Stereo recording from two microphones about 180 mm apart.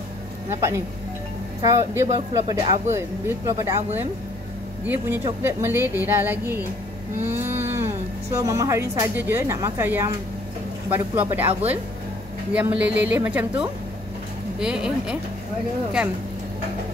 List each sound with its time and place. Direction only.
0.5 s speech: 15° right (ahead or behind)
7.2 s vehicle: 10° right (ahead or behind)
7.7 s a woman's voice: 15° right (ahead or behind)